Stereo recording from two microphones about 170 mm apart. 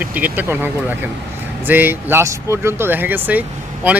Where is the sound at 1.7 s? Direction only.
10° right (ahead or behind).